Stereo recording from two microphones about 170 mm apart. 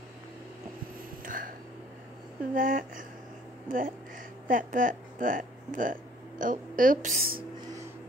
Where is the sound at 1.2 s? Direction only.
55° right (ahead or behind).